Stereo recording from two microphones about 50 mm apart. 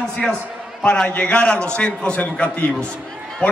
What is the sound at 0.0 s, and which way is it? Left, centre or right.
A man's voice, centre.